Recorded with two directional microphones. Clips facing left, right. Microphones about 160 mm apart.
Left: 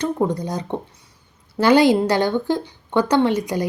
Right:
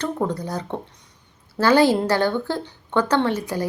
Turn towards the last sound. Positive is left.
turn(degrees=15)  # may be behind; listen again after turning